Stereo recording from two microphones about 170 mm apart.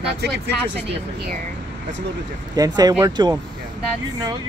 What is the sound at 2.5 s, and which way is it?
Speech, 20° right (ahead or behind).